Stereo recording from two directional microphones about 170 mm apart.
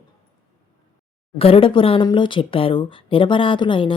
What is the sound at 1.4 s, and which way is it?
Speech, 35° left (ahead or behind).